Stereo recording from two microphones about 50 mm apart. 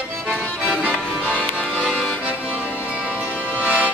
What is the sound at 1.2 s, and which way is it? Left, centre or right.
Music, left.